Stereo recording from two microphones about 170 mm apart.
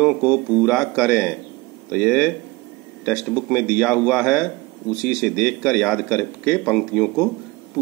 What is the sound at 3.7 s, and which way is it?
A man's voice, centre (ahead or behind).